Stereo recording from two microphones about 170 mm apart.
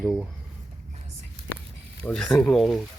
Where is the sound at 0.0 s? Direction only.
Centre (ahead or behind).